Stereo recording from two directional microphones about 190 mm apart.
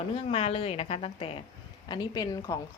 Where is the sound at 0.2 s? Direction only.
30° left (ahead or behind).